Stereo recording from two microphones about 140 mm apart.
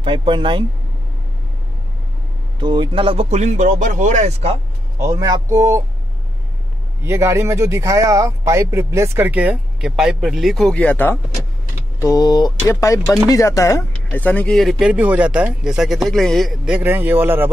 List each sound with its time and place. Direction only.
0.0 s speech: 35° right (ahead or behind)
2.6 s speech: 35° right (ahead or behind); by 4.6 s 50° right (ahead or behind)
4.9 s speech: 25° right (ahead or behind)
7.0 s speech: 20° right (ahead or behind); by 11.1 s 10° left (ahead or behind)
12.0 s speech: 25° left (ahead or behind); by 17.5 s 15° right (ahead or behind)